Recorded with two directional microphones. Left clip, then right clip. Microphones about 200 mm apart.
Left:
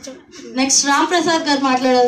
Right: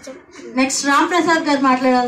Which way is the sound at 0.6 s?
40° left (ahead or behind).